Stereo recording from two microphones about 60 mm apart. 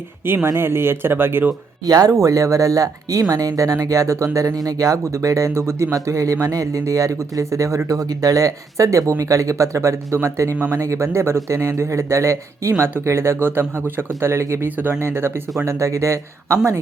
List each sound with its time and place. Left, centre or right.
0.4 s speech: right
1.8 s speech: right
2.1 s speech: right
7.9 s speech: right
15.6 s speech: right